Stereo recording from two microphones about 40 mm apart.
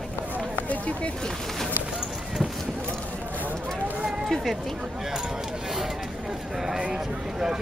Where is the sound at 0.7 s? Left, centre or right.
Left.